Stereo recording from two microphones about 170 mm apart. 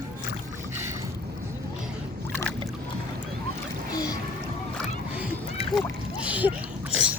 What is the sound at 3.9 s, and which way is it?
Splash, 20° left (ahead or behind).